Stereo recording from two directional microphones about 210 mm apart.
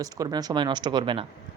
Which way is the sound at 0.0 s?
20° right (ahead or behind).